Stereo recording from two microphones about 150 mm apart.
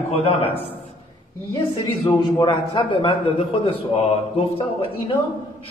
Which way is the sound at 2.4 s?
35° left (ahead or behind).